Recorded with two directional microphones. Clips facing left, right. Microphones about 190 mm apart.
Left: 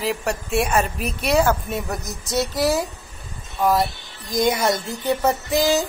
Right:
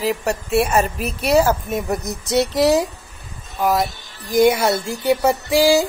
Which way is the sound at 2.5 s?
20° right (ahead or behind).